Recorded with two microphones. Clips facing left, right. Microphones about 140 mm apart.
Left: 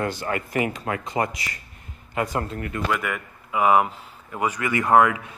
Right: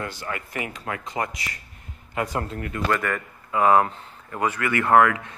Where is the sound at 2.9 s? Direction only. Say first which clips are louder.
Right 2 dB; 10° left (ahead or behind).